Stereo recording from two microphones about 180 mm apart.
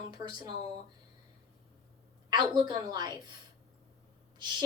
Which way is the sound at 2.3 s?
25° right (ahead or behind).